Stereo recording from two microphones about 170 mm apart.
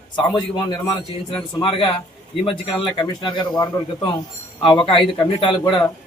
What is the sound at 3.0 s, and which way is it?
Speech, 25° left (ahead or behind).